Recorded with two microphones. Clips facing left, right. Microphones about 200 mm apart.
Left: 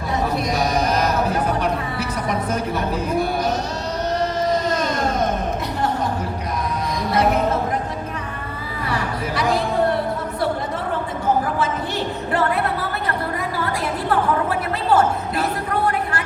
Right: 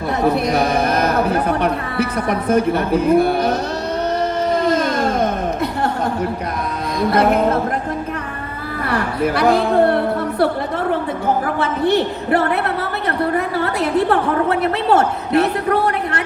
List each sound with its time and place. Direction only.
0.4 s a woman's voice: 60° right (ahead or behind)
8.9 s speech: 60° right (ahead or behind)
11.6 s a woman's voice: 60° right (ahead or behind)